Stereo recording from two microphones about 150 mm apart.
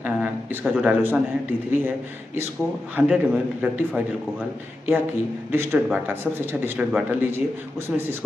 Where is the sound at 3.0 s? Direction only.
15° right (ahead or behind).